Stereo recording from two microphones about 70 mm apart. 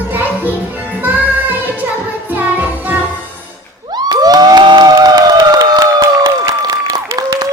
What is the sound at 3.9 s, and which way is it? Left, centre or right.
Crowd, right.